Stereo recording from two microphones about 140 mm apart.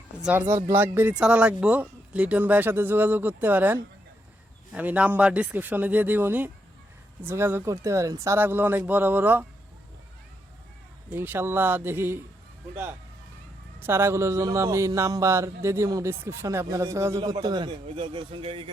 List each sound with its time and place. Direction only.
0.2 s speech: 10° right (ahead or behind)
11.1 s speech: 15° right (ahead or behind)
13.7 s speech: 15° right (ahead or behind); by 18.7 s 40° right (ahead or behind)